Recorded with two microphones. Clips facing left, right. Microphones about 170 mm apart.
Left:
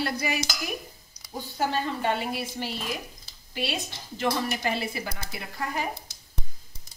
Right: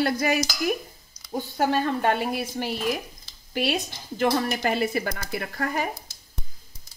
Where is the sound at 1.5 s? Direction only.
50° right (ahead or behind).